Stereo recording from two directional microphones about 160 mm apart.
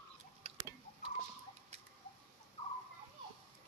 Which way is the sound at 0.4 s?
40° right (ahead or behind).